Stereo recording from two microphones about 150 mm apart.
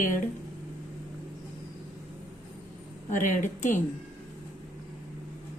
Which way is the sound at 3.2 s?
55° left (ahead or behind).